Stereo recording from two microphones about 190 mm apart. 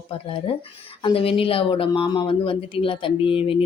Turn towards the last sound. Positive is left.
turn(degrees=30)  # may be behind; listen again after turning